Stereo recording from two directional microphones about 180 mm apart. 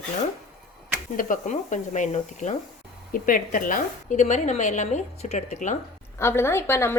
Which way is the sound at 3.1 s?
50° left (ahead or behind).